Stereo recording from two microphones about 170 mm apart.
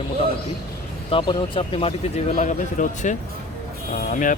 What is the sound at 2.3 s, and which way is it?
Speech, 50° left (ahead or behind).